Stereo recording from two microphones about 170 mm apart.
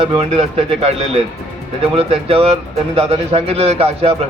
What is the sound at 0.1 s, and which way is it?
Speech, 35° right (ahead or behind).